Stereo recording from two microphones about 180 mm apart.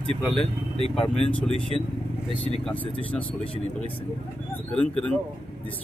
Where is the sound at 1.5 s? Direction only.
30° left (ahead or behind).